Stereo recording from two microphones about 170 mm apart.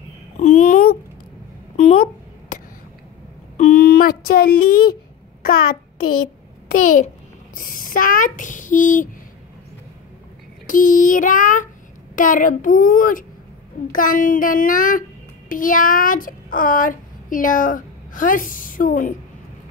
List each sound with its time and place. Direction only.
0.4 s a child's voice: 45° left (ahead or behind)
3.5 s a sound: 50° left (ahead or behind)
5.4 s a child's voice: 60° left (ahead or behind)
10.7 s a child's voice: 50° left (ahead or behind)